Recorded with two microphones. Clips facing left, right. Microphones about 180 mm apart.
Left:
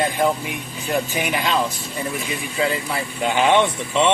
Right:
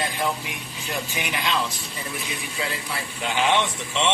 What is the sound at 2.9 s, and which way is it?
Speech, 50° left (ahead or behind).